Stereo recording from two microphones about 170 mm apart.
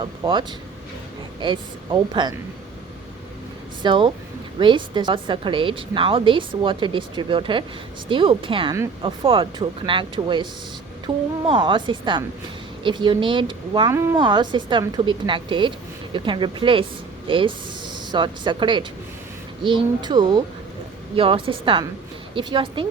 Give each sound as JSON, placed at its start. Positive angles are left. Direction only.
{"t": 0.0, "sound": "a woman's voice", "side_deg": -30}
{"t": 3.8, "sound": "a woman's voice", "side_deg": -25}
{"t": 13.9, "sound": "speech", "side_deg": -15}
{"t": 14.2, "sound": "a woman's voice", "side_deg": -30}